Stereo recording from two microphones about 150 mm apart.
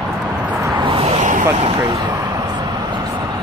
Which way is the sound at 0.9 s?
35° right (ahead or behind).